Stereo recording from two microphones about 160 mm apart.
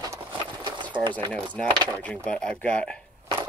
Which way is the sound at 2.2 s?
5° left (ahead or behind).